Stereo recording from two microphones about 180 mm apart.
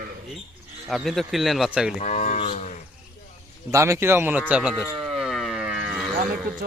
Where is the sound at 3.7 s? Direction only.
15° right (ahead or behind).